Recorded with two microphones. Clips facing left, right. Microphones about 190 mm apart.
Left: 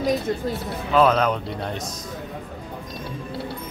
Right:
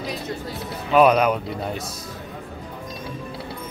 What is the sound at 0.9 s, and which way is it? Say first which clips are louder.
Speech: right 2 dB; 15° right (ahead or behind).